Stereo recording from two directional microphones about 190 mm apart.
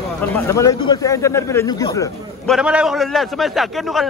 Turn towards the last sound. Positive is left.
turn(degrees=0)  # may be behind; listen again after turning